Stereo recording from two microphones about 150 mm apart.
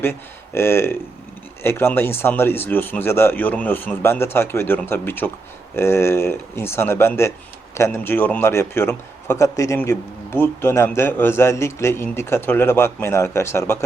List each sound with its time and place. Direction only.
0.0 s a man's voice: 15° left (ahead or behind)